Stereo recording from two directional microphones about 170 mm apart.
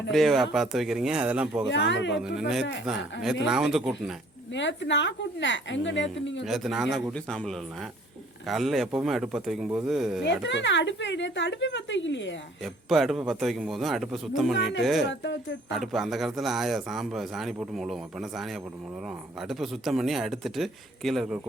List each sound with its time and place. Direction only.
0.1 s a man's voice: centre (ahead or behind)
1.6 s a woman's voice: 90° left
2.8 s a man's voice: centre (ahead or behind)
4.5 s a woman's voice: 90° left
6.4 s a man's voice: centre (ahead or behind)
10.2 s a woman's voice: 90° left
12.6 s a man's voice: centre (ahead or behind)
15.0 s a woman's voice: 90° left
15.8 s a man's voice: centre (ahead or behind)